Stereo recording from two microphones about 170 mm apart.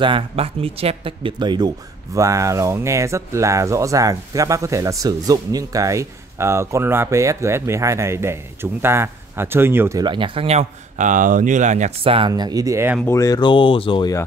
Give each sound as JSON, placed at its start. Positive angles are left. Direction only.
{"t": 0.0, "sound": "speech", "side_deg": -30}
{"t": 13.0, "sound": "speech", "side_deg": 15}